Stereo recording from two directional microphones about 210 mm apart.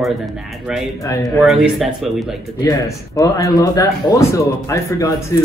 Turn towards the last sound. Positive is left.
turn(degrees=15)  # may be behind; listen again after turning